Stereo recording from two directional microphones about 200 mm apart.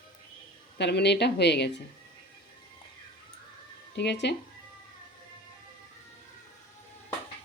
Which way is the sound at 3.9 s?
60° left (ahead or behind).